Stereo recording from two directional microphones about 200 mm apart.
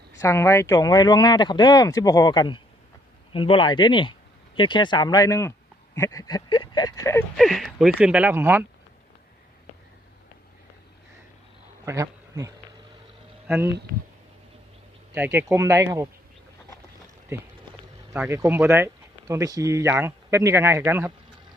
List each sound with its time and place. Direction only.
0.2 s speech: 15° left (ahead or behind)
7.3 s speech: centre (ahead or behind)
11.9 s speech: 15° right (ahead or behind)
15.1 s speech: 10° right (ahead or behind)
18.1 s speech: 15° right (ahead or behind)